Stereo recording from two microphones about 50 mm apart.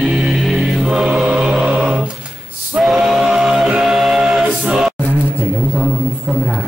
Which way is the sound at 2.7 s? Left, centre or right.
Centre.